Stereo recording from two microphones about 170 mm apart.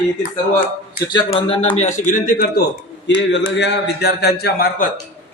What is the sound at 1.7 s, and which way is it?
Speech, 45° left (ahead or behind).